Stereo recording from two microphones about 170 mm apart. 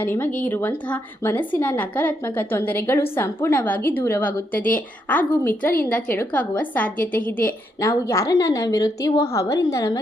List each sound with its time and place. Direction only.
0.0 s a woman's voice: 10° left (ahead or behind)